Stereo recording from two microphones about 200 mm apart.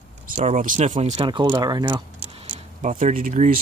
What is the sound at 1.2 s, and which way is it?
Speech, 25° right (ahead or behind).